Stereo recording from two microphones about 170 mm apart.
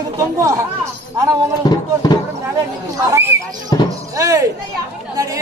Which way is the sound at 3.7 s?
25° left (ahead or behind).